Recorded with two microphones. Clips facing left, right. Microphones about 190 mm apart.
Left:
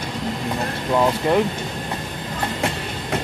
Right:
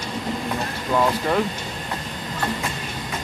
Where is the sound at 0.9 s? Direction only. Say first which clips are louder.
Left 2 dB; 20° left (ahead or behind).